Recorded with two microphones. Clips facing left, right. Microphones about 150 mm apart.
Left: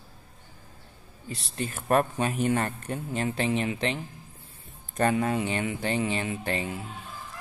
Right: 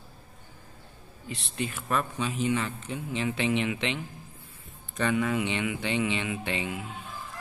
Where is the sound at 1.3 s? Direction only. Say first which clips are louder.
Even; 40° left (ahead or behind).